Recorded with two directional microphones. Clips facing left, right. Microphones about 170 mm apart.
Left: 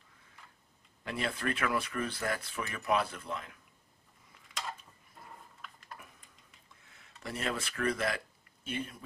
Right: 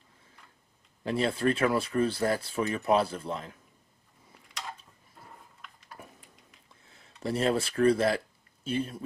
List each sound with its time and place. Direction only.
1.0 s speech: 30° right (ahead or behind)
5.2 s a sound: centre (ahead or behind)
6.9 s speech: 30° right (ahead or behind)